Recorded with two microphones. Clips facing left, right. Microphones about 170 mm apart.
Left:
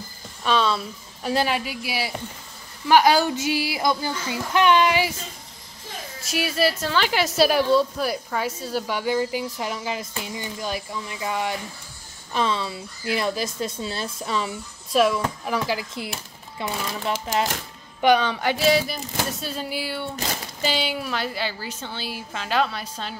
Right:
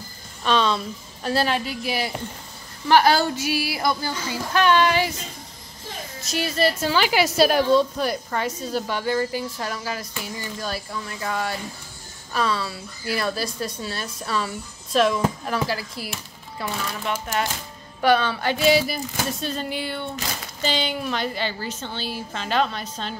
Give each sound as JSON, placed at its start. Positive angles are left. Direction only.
{"t": 0.4, "sound": "a sound", "side_deg": 5}
{"t": 1.3, "sound": "a woman's voice", "side_deg": 10}
{"t": 6.3, "sound": "a woman's voice", "side_deg": 10}
{"t": 6.8, "sound": "a woman's voice", "side_deg": -5}
{"t": 18.6, "sound": "a sound", "side_deg": 0}
{"t": 19.4, "sound": "a woman's voice", "side_deg": 5}